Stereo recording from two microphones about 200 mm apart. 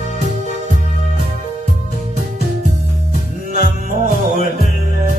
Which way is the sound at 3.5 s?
40° right (ahead or behind).